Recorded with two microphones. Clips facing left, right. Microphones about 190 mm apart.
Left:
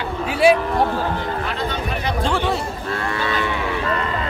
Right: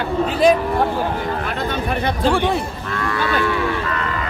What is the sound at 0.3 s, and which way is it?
Speech, 10° left (ahead or behind).